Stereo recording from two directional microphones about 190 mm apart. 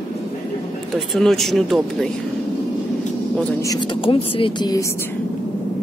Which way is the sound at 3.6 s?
20° left (ahead or behind).